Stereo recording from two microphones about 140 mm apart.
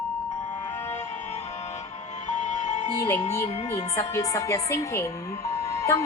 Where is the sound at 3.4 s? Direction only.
50° left (ahead or behind).